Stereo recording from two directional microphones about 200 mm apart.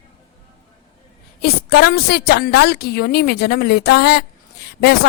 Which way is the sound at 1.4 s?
55° left (ahead or behind).